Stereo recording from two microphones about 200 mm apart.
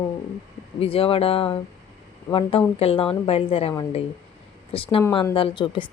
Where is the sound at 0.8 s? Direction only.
30° left (ahead or behind).